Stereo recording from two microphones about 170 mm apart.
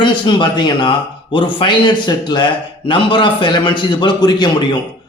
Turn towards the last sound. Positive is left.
turn(degrees=25)  # may be behind; listen again after turning